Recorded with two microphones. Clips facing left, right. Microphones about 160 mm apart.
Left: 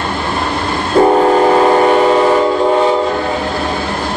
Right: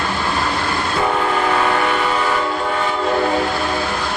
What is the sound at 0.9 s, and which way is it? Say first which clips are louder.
Train: left 12 dB; 40° left (ahead or behind).